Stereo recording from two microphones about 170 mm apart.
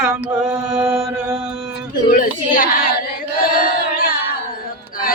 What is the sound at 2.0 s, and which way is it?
Speech, 55° left (ahead or behind).